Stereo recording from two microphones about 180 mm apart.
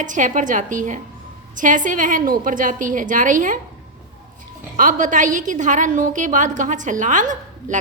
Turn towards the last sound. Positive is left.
turn(degrees=-45)  # may be behind; listen again after turning